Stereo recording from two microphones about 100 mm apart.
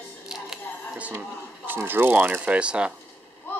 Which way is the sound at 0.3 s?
10° right (ahead or behind).